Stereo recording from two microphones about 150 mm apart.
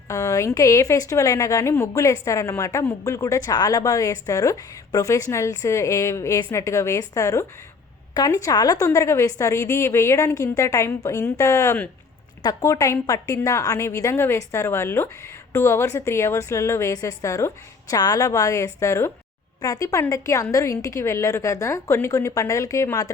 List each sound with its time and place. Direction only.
0.1 s a woman's voice: 20° left (ahead or behind)